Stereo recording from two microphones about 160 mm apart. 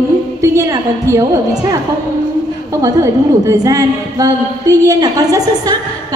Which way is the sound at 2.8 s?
20° right (ahead or behind).